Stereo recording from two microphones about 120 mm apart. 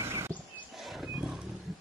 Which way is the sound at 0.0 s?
20° right (ahead or behind).